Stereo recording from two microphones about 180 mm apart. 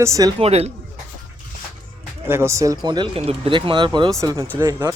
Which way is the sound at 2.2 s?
15° right (ahead or behind).